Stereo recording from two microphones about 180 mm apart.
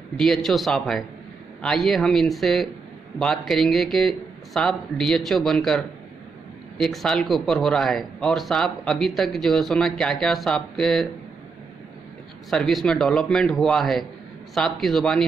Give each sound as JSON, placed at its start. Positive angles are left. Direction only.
{"t": 0.2, "sound": "speech", "side_deg": 0}
{"t": 12.4, "sound": "speech", "side_deg": 0}